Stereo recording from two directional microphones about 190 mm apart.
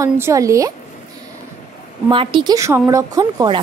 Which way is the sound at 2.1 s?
25° right (ahead or behind).